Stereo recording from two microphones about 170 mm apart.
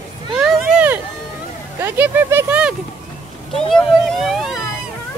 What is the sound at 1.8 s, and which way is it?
Speech, 15° right (ahead or behind).